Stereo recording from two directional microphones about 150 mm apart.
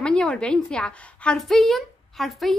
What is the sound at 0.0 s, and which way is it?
A woman's voice, 5° left (ahead or behind).